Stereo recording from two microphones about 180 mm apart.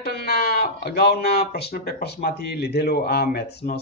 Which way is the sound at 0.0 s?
65° left (ahead or behind).